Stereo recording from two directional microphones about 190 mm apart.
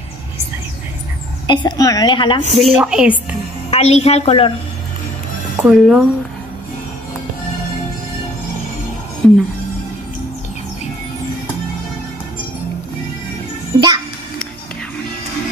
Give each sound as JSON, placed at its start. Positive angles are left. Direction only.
{"t": 1.5, "sound": "a woman's voice", "side_deg": 20}
{"t": 2.5, "sound": "a woman's voice", "side_deg": 0}
{"t": 3.7, "sound": "a woman's voice", "side_deg": 35}
{"t": 5.6, "sound": "a woman's voice", "side_deg": 0}
{"t": 9.2, "sound": "a woman's voice", "side_deg": 5}
{"t": 13.7, "sound": "music", "side_deg": -25}